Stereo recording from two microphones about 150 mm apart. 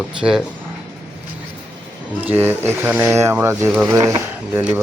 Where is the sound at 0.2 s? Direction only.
5° right (ahead or behind).